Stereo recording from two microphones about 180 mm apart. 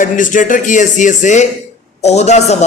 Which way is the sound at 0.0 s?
45° left (ahead or behind).